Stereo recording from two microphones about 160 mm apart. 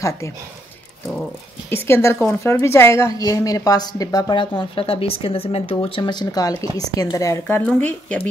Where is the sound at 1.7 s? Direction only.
15° left (ahead or behind).